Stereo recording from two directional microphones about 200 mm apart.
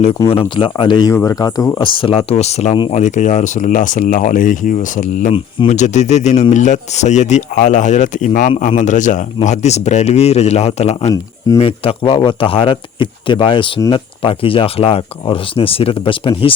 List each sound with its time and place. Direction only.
0.3 s speech: 25° left (ahead or behind)
5.3 s speech: 30° left (ahead or behind)
11.1 s speech: 15° left (ahead or behind)
11.6 s speech: 25° left (ahead or behind)